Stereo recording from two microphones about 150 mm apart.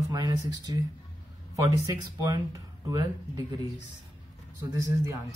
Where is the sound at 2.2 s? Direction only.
25° right (ahead or behind).